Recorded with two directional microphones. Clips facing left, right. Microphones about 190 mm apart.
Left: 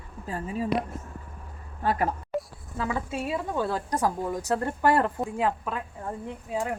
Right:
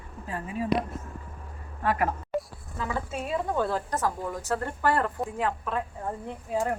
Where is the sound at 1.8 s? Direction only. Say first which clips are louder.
Even; 35° left (ahead or behind).